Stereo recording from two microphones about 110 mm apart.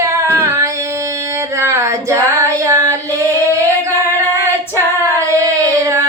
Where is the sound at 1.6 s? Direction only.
25° right (ahead or behind).